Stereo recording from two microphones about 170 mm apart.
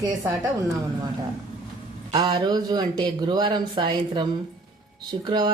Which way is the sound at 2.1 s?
25° right (ahead or behind).